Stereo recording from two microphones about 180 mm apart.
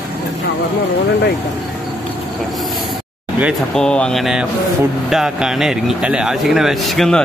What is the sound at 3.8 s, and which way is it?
Speech, 5° left (ahead or behind).